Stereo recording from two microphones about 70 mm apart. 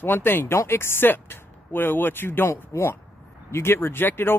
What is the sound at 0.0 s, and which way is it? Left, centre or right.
Speech, left.